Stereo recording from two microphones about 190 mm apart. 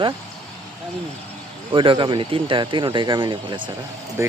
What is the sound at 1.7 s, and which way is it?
Speech, 25° right (ahead or behind).